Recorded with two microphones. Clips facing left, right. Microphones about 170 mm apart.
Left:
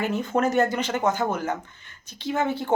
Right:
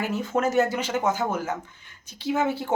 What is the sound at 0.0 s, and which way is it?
Speech, 5° right (ahead or behind).